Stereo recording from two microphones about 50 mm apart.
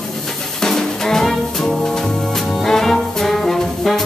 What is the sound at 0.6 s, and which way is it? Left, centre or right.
Drum, centre.